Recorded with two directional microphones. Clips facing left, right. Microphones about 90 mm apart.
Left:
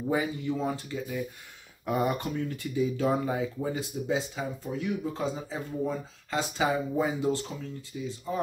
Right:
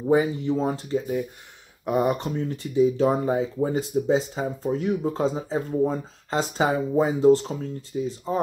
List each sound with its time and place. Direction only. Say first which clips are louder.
0.0 s speech: right 8 dB; 30° right (ahead or behind)